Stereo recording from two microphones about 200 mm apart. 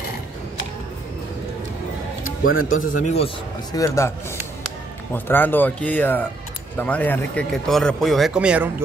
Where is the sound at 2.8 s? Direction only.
40° left (ahead or behind).